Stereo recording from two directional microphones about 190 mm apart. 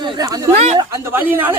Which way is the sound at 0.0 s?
20° right (ahead or behind).